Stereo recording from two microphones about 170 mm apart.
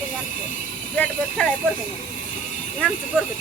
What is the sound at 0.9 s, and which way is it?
Speech, 10° left (ahead or behind).